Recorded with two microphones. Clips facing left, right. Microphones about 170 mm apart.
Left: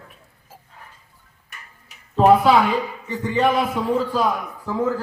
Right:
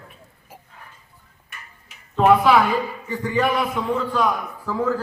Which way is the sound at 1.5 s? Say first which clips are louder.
Right 1 dB; 40° left (ahead or behind).